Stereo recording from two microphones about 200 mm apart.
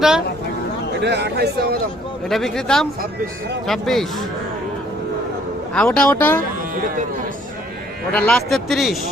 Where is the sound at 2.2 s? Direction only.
Centre (ahead or behind).